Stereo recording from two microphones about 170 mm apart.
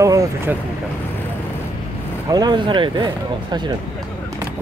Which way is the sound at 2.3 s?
25° right (ahead or behind).